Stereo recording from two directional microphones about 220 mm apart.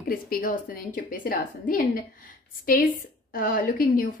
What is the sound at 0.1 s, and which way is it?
A woman's voice, 40° left (ahead or behind).